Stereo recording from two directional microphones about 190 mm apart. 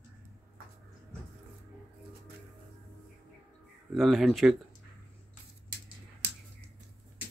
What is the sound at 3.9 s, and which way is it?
Speech, centre (ahead or behind).